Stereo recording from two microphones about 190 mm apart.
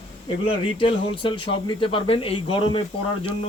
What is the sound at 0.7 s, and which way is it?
Speech, 25° left (ahead or behind).